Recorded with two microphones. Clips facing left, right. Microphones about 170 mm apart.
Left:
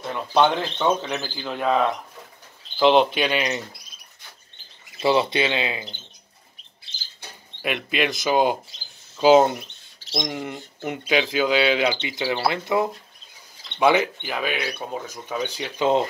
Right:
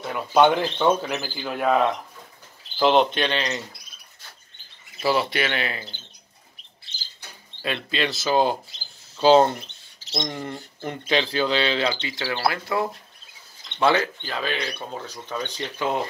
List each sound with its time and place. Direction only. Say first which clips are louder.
0.0 s speech: right 2 dB; 5° right (ahead or behind); by 3.6 s 15° left (ahead or behind)
5.0 s speech: left 3 dB; 20° left (ahead or behind)
7.6 s speech: left 2 dB; 15° left (ahead or behind)
15.8 s speech: left 6 dB; 25° left (ahead or behind)